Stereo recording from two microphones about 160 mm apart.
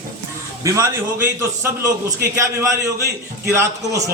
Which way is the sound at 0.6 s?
20° right (ahead or behind).